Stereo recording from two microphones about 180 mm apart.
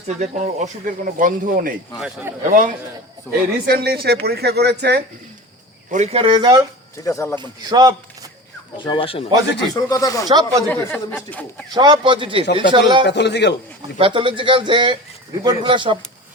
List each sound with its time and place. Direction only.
0.1 s speech: 40° right (ahead or behind)
3.3 s speech: 10° left (ahead or behind)
3.7 s speech: 60° right (ahead or behind)
5.9 s speech: 40° right (ahead or behind)
6.9 s speech: 15° left (ahead or behind)
7.3 s speech: 20° right (ahead or behind)
8.8 s speech: 30° left (ahead or behind)
9.7 s speech: 20° left (ahead or behind)
10.2 s speech: 20° right (ahead or behind)
10.7 s speech: 10° left (ahead or behind)
11.7 s speech: 25° right (ahead or behind)
13.1 s a man's voice: 70° left (ahead or behind)
14.0 s speech: 30° right (ahead or behind)